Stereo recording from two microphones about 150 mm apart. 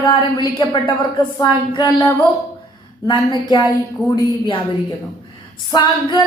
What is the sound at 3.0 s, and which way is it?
A woman's voice, 30° left (ahead or behind).